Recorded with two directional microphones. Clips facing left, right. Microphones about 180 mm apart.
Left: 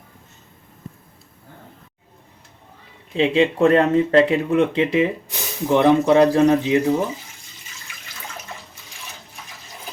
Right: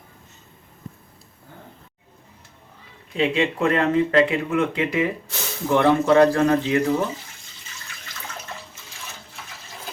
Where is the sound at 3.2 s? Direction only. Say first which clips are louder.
Left 5 dB; 30° left (ahead or behind).